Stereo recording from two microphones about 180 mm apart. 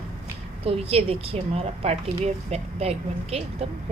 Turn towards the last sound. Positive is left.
turn(degrees=-35)  # may be behind; listen again after turning